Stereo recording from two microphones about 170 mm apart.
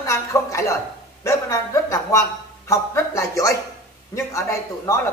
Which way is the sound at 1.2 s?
20° left (ahead or behind).